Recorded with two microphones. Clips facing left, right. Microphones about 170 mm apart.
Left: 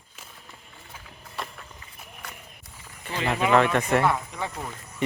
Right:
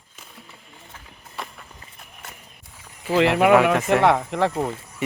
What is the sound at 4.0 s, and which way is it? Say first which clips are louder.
Speech: right 7 dB; 80° right.